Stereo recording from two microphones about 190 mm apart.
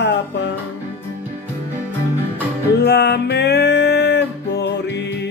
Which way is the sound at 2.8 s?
60° left (ahead or behind).